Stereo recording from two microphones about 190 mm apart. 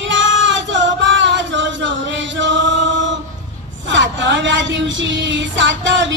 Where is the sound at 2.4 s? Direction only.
75° right (ahead or behind).